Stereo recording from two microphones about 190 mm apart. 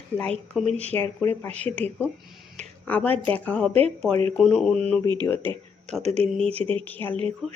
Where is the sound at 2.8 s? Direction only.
10° left (ahead or behind).